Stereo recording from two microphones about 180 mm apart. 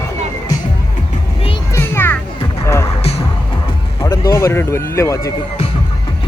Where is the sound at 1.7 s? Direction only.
15° left (ahead or behind).